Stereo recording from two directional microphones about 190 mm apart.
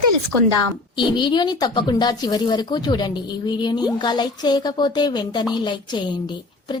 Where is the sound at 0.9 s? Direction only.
25° left (ahead or behind).